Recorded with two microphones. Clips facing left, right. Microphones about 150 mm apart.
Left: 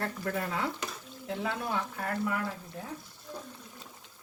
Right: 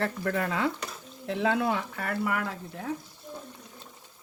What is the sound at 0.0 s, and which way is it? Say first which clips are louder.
Speech: right 4 dB; 85° right.